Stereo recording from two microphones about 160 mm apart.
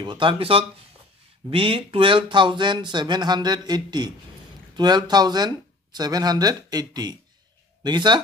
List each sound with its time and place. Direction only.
0.0 s speech: 30° right (ahead or behind)